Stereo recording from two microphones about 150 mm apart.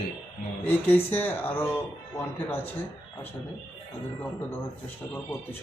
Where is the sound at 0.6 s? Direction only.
10° left (ahead or behind).